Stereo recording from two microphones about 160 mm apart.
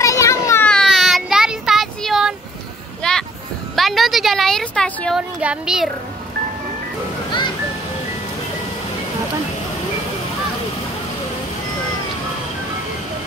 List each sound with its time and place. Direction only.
0.0 s children playing: 20° left (ahead or behind)
0.7 s child singing: centre (ahead or behind)
3.0 s vehicle: 5° left (ahead or behind)
3.7 s a sound: centre (ahead or behind)
5.4 s speech: 5° right (ahead or behind)